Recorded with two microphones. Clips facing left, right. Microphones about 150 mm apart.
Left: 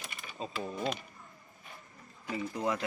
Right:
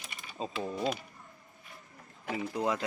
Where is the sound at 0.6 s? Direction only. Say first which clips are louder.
Right 2 dB; 10° right (ahead or behind).